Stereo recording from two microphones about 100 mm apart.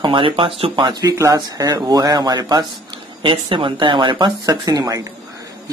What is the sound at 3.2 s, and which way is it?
Speech, 55° right (ahead or behind).